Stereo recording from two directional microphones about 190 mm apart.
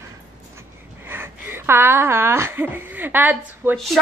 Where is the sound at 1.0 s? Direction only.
10° right (ahead or behind).